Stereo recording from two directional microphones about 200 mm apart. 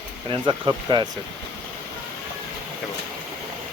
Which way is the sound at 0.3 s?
25° right (ahead or behind).